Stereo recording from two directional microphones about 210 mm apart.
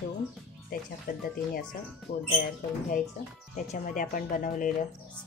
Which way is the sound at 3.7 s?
40° left (ahead or behind).